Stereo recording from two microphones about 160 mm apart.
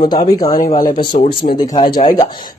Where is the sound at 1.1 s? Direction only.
50° left (ahead or behind).